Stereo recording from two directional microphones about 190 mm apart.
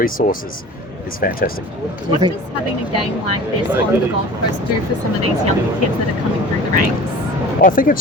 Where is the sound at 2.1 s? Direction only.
25° right (ahead or behind).